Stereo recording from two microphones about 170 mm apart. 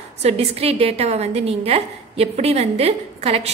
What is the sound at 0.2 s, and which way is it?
A woman's voice, 35° right (ahead or behind).